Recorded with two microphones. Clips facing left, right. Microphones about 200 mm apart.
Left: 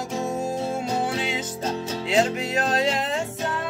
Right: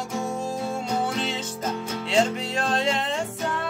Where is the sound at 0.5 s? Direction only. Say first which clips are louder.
Left 2 dB; 25° left (ahead or behind).